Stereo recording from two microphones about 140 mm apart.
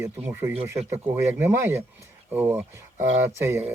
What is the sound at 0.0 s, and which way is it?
Speech, 15° right (ahead or behind).